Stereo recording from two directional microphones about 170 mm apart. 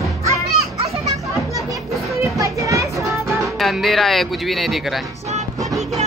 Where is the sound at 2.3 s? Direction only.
20° right (ahead or behind).